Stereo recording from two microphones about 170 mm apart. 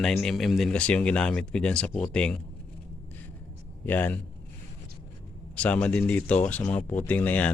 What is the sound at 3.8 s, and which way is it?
Speech, 10° left (ahead or behind).